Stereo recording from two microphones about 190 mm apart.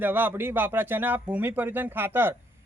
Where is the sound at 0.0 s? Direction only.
10° right (ahead or behind).